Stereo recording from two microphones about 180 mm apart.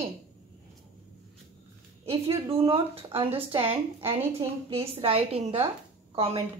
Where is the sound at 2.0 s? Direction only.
30° right (ahead or behind).